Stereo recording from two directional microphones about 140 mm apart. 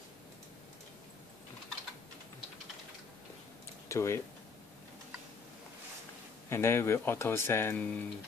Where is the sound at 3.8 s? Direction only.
20° left (ahead or behind).